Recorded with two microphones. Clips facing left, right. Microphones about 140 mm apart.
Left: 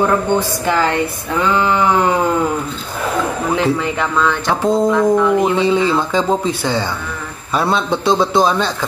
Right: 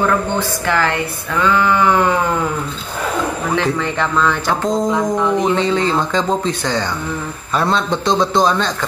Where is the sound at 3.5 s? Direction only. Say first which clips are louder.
Left 2 dB; 5° left (ahead or behind).